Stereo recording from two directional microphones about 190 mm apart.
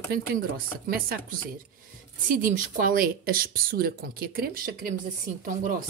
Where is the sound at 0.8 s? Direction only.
50° right (ahead or behind).